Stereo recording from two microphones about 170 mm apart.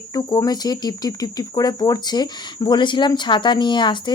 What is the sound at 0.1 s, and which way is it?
Speech, 25° left (ahead or behind).